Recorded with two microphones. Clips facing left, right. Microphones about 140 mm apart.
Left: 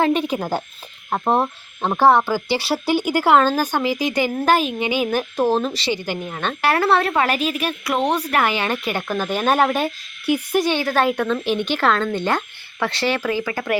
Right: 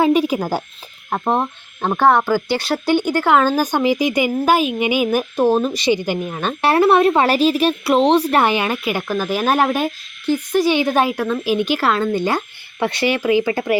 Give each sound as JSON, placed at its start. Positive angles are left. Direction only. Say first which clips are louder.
{"t": 0.0, "sound": "speech", "louder": "right 4 dB", "side_deg": -10}
{"t": 0.3, "sound": "insect", "louder": "right 2 dB", "side_deg": -5}
{"t": 3.4, "sound": "speech", "louder": "right 3 dB", "side_deg": -10}
{"t": 6.6, "sound": "speech", "louder": "right 5 dB", "side_deg": -25}
{"t": 10.2, "sound": "speech", "louder": "right 1 dB", "side_deg": 10}
{"t": 10.8, "sound": "speech", "louder": "right 2 dB", "side_deg": -15}